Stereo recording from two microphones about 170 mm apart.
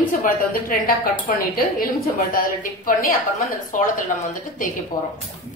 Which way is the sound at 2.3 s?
55° left (ahead or behind).